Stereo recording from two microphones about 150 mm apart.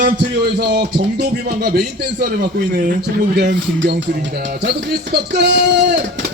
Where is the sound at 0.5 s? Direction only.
90° right.